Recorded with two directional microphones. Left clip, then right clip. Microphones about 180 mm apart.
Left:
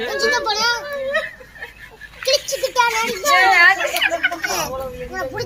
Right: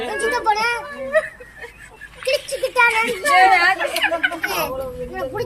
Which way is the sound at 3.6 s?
65° right (ahead or behind).